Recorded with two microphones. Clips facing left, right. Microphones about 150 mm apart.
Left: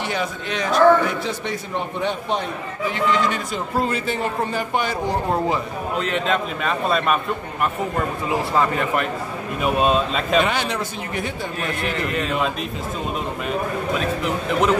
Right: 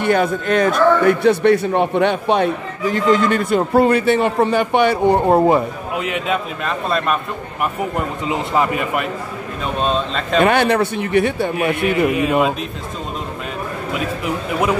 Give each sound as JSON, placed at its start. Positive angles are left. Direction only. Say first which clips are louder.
{"t": 0.0, "sound": "a man's voice", "louder": "right 9 dB", "side_deg": -55}
{"t": 2.8, "sound": "a man's voice", "louder": "right 5 dB", "side_deg": -45}
{"t": 5.9, "sound": "a man's voice", "louder": "right 1 dB", "side_deg": -10}
{"t": 8.3, "sound": "a man's voice", "louder": "right 2 dB", "side_deg": -15}
{"t": 9.8, "sound": "speech", "louder": "even", "side_deg": 5}
{"t": 10.4, "sound": "a man's voice", "louder": "right 8 dB", "side_deg": -60}